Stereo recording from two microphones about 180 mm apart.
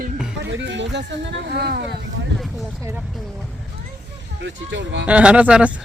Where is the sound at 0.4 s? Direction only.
85° right; by 2.0 s 65° right (ahead or behind).